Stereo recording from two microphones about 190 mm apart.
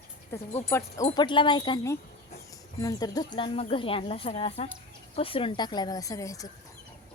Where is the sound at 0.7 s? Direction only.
15° left (ahead or behind).